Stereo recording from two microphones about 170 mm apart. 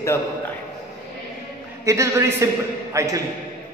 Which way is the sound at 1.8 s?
15° right (ahead or behind).